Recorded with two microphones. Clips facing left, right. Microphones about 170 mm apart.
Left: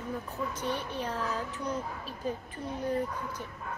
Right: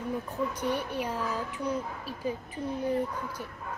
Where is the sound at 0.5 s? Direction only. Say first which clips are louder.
Right 3 dB; 10° right (ahead or behind).